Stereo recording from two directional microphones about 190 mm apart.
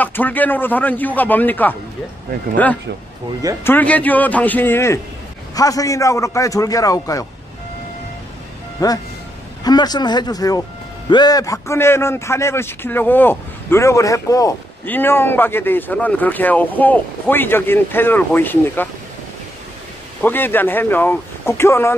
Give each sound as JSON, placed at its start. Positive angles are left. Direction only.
{"t": 0.0, "sound": "a man's voice", "side_deg": 10}
{"t": 8.8, "sound": "a man's voice", "side_deg": 20}
{"t": 20.2, "sound": "a man's voice", "side_deg": 10}